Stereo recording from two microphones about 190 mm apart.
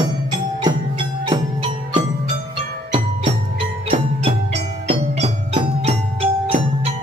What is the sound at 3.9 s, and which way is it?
Music, 30° right (ahead or behind).